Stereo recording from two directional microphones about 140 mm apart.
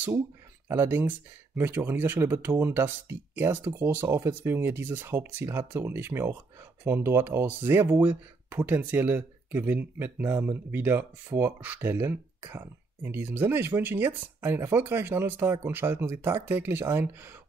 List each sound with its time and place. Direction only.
0.7 s speech: 15° right (ahead or behind)